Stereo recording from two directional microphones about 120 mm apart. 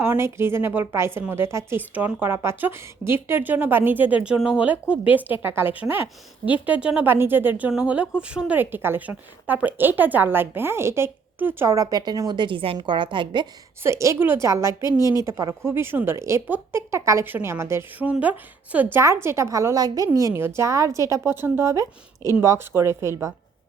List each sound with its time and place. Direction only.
0.0 s a woman's voice: 20° right (ahead or behind); by 13.5 s 40° right (ahead or behind)
13.8 s a woman's voice: 25° right (ahead or behind)